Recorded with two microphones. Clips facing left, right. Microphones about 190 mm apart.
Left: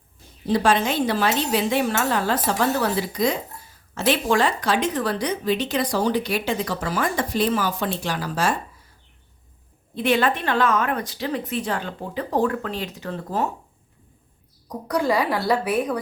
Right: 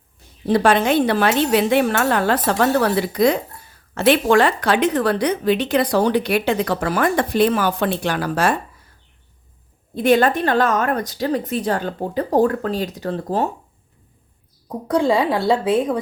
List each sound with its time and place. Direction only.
0.4 s speech: 60° right (ahead or behind)
9.9 s a woman's voice: 45° right (ahead or behind)
14.7 s a woman's voice: 25° right (ahead or behind)